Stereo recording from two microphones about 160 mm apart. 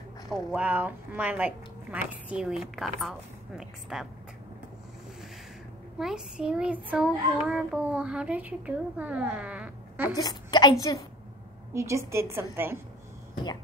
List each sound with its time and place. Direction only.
0.3 s speech: 10° right (ahead or behind)
5.9 s child singing: 5° right (ahead or behind)
10.1 s a woman's voice: 25° left (ahead or behind)
11.7 s child singing: 15° right (ahead or behind)